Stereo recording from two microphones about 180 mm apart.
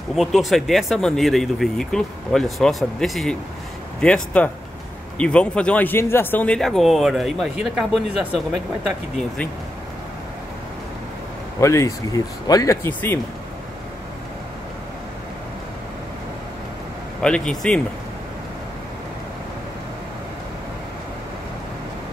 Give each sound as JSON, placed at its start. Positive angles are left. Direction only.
{"t": 0.1, "sound": "speech", "side_deg": 0}
{"t": 11.6, "sound": "speech", "side_deg": 15}
{"t": 17.2, "sound": "speech", "side_deg": 5}